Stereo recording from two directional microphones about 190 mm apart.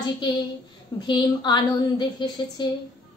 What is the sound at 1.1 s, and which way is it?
A woman's voice, 20° left (ahead or behind).